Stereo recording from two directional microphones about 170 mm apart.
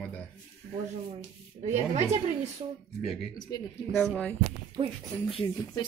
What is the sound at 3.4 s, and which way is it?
Speech, 25° left (ahead or behind).